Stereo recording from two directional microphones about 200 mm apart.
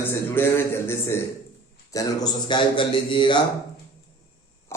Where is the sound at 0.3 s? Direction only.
10° left (ahead or behind).